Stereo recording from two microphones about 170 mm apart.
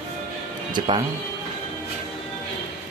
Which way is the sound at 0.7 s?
25° right (ahead or behind).